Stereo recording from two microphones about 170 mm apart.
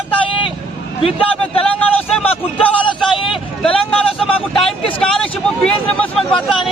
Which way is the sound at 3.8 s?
5° left (ahead or behind).